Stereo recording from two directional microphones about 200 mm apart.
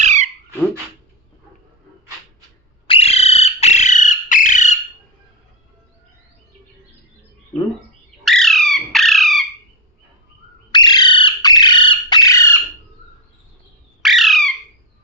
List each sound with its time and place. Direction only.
0.0 s a sound: 35° right (ahead or behind)
2.8 s bird: 30° left (ahead or behind)
8.2 s squawk: centre (ahead or behind)
10.7 s bird: 20° left (ahead or behind)
14.0 s squawk: centre (ahead or behind)